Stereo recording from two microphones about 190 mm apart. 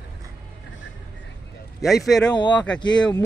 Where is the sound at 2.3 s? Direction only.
25° left (ahead or behind).